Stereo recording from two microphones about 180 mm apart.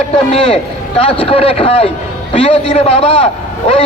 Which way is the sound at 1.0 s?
30° left (ahead or behind).